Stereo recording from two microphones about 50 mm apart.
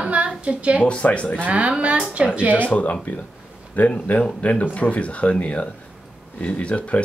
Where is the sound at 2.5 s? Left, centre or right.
Left.